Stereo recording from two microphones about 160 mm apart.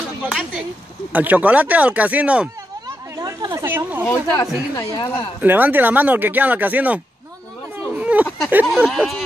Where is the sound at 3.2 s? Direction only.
25° right (ahead or behind).